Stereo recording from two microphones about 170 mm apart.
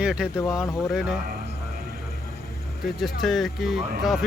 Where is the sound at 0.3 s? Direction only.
20° left (ahead or behind).